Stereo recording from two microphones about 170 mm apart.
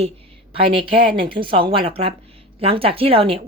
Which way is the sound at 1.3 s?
30° right (ahead or behind).